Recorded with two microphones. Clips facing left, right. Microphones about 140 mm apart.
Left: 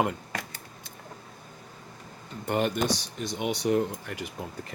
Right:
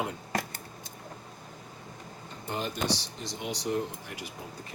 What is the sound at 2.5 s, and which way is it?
Speech, 65° left (ahead or behind).